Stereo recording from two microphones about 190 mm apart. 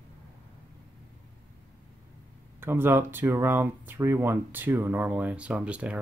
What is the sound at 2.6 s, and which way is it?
Speech, 10° right (ahead or behind).